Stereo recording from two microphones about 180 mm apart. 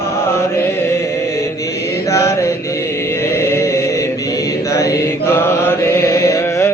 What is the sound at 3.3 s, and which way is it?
Chant, 15° left (ahead or behind).